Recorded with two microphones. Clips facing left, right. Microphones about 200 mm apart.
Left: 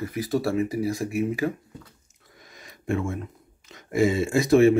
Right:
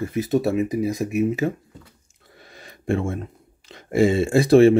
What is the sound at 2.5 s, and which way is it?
Speech, 30° right (ahead or behind).